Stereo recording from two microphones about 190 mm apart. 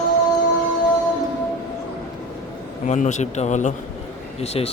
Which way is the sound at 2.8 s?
40° left (ahead or behind).